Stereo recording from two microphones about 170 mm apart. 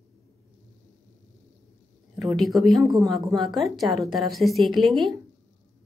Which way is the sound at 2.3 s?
Centre (ahead or behind).